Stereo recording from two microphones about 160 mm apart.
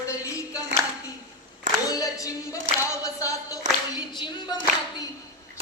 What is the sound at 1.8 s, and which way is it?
Singing, 20° left (ahead or behind).